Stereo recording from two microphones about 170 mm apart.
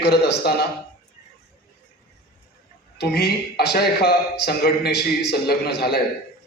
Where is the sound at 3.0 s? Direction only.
75° left (ahead or behind).